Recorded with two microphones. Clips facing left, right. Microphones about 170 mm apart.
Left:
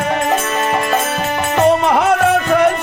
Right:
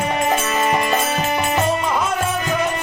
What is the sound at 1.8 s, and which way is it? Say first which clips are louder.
Music: left 7 dB; 70° left (ahead or behind).